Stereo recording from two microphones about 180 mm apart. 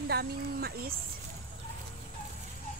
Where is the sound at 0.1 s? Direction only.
60° right (ahead or behind).